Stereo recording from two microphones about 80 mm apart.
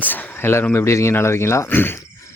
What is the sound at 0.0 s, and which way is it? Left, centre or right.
Speech, left.